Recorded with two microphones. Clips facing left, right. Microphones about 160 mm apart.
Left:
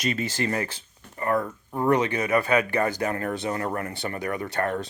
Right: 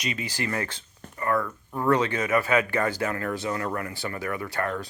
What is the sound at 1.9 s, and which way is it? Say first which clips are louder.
Speech: even; 15° left (ahead or behind).